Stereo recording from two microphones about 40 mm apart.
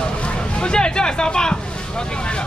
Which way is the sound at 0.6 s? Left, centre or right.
Left.